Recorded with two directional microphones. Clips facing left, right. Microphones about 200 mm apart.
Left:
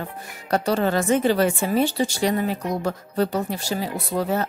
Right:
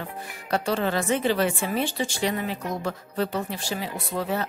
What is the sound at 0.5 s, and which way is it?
A woman's voice, 40° left (ahead or behind).